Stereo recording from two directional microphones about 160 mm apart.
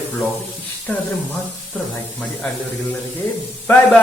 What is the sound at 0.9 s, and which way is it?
Speech, 10° left (ahead or behind).